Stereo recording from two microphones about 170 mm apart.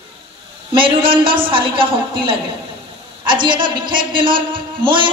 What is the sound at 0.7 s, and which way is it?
A man's voice, 30° right (ahead or behind).